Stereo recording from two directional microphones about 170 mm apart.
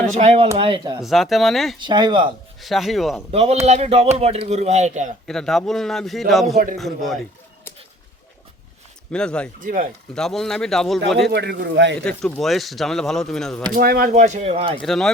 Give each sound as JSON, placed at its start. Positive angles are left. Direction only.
{"t": 0.2, "sound": "a man's voice", "side_deg": -35}
{"t": 1.0, "sound": "speech", "side_deg": 0}
{"t": 1.8, "sound": "speech", "side_deg": -25}
{"t": 2.6, "sound": "speech", "side_deg": 0}
{"t": 3.3, "sound": "a man's voice", "side_deg": -40}
{"t": 5.3, "sound": "speech", "side_deg": 0}
{"t": 9.1, "sound": "speech", "side_deg": 5}
{"t": 9.6, "sound": "speech", "side_deg": -50}
{"t": 10.2, "sound": "speech", "side_deg": 0}
{"t": 11.3, "sound": "a man's voice", "side_deg": -80}
{"t": 12.0, "sound": "speech", "side_deg": 5}
{"t": 13.7, "sound": "speech", "side_deg": -65}
{"t": 14.1, "sound": "a man's voice", "side_deg": -45}
{"t": 14.8, "sound": "speech", "side_deg": 0}